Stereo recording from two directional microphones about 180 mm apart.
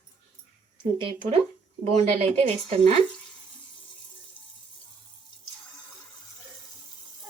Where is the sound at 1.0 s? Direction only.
30° right (ahead or behind).